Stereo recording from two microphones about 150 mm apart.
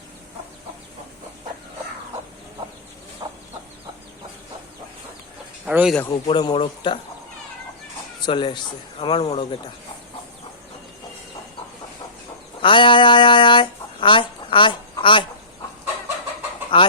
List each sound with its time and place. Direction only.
3.2 s chicken: 30° right (ahead or behind)
5.6 s speech: 5° right (ahead or behind)
6.1 s speech: 30° left (ahead or behind)
8.2 s speech: 35° left (ahead or behind)
12.6 s speech: 35° left (ahead or behind)